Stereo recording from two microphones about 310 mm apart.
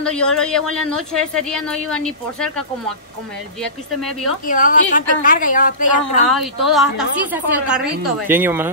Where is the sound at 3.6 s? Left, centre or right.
Centre.